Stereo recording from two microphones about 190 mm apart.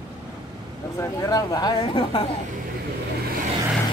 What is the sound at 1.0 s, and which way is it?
Speech, 20° left (ahead or behind).